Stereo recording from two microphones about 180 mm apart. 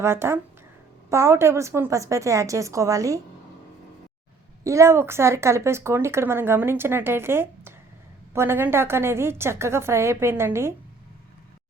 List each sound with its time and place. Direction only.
0.0 s a woman's voice: 15° right (ahead or behind)
4.6 s a woman's voice: 15° right (ahead or behind)